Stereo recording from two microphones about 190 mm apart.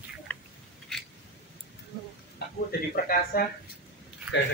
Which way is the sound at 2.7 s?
50° left (ahead or behind).